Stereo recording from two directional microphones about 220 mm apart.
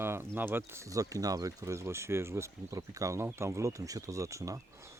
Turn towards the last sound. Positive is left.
turn(degrees=-15)  # may be behind; listen again after turning